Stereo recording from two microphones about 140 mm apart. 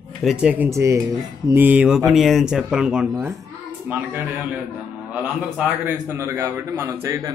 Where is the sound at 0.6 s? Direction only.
20° right (ahead or behind).